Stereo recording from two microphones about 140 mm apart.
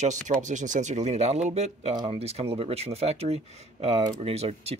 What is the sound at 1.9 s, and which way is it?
Speech, 40° right (ahead or behind).